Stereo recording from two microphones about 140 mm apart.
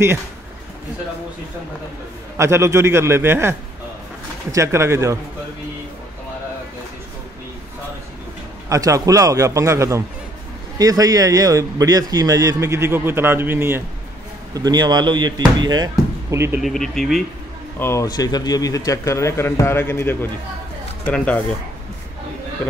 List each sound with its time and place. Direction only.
2.3 s speech: 20° right (ahead or behind)
8.6 s speech: 25° right (ahead or behind)
14.5 s speech: 30° right (ahead or behind)
16.6 s speech: centre (ahead or behind)
17.7 s speech: 15° left (ahead or behind)
18.0 s a man's voice: 30° left (ahead or behind)